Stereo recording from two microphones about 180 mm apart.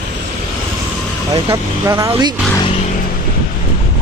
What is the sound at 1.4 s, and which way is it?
Speech, 15° right (ahead or behind).